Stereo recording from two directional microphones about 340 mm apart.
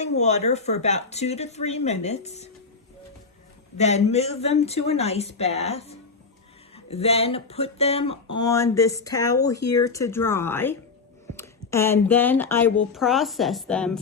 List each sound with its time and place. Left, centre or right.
0.0 s speech: centre
3.8 s a woman's voice: centre